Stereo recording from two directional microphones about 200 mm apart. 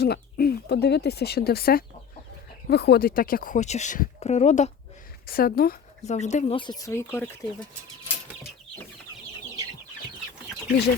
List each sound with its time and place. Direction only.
0.0 s a woman's voice: 50° left (ahead or behind); by 4.7 s 35° left (ahead or behind)
5.2 s speech: 45° left (ahead or behind)
6.1 s a woman's voice: 35° left (ahead or behind)
6.6 s speech: 20° left (ahead or behind)